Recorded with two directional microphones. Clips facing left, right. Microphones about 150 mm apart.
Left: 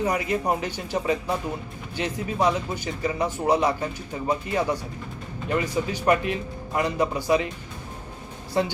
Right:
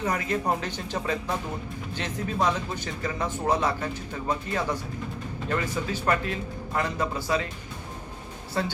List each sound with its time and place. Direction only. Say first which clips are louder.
0.0 s speech: left 3 dB; 10° left (ahead or behind)
8.6 s speech: left 5 dB; 15° left (ahead or behind)